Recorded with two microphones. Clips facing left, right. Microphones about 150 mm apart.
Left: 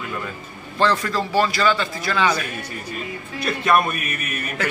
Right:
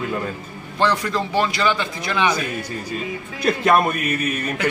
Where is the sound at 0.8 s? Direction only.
20° right (ahead or behind).